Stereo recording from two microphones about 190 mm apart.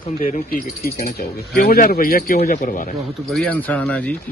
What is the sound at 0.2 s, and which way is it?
Speech, 45° left (ahead or behind).